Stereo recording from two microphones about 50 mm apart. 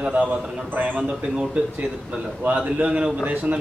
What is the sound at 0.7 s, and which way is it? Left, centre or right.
Speech, right.